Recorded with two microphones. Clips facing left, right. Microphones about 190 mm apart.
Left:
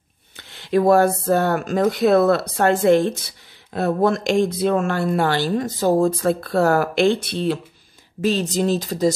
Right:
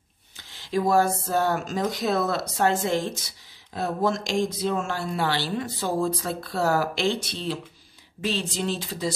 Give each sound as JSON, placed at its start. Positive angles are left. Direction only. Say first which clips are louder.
{"t": 0.4, "sound": "speech", "louder": "left 7 dB", "side_deg": 60}
{"t": 8.2, "sound": "speech", "louder": "left 8 dB", "side_deg": 45}